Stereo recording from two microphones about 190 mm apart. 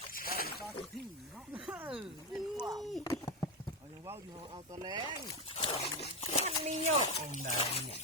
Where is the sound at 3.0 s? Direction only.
15° left (ahead or behind).